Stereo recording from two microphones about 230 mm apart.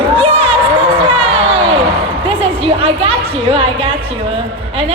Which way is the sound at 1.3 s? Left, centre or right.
Right.